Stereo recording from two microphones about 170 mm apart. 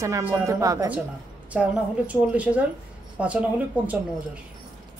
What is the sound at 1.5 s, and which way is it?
Speech, 5° right (ahead or behind).